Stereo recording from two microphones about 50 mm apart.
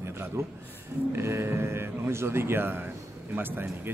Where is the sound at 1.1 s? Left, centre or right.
Right.